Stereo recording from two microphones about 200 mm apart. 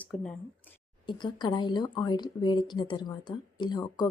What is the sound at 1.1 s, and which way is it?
A woman's voice, 20° left (ahead or behind).